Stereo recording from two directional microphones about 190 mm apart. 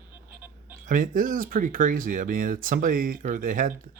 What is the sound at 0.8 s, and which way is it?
Speech, 45° right (ahead or behind).